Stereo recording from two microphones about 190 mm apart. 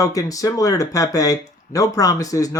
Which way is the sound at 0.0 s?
20° left (ahead or behind).